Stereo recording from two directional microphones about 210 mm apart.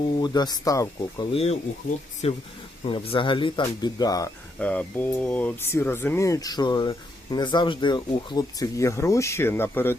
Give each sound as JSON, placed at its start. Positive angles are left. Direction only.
{"t": 0.2, "sound": "speech", "side_deg": 20}
{"t": 2.2, "sound": "speech", "side_deg": 30}